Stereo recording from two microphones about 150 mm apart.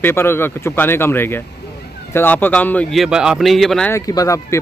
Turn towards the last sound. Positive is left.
turn(degrees=20)  # may be behind; listen again after turning